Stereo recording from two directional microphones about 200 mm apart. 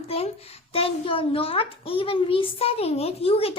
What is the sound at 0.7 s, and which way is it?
A child's voice, 30° left (ahead or behind).